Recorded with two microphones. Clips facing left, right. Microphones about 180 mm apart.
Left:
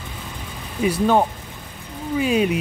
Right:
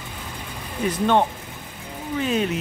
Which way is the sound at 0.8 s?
10° left (ahead or behind).